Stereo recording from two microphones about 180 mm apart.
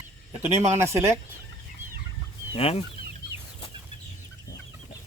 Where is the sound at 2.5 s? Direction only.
30° left (ahead or behind).